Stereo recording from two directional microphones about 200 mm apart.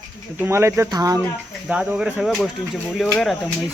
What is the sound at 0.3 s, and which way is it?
Speech, 10° right (ahead or behind).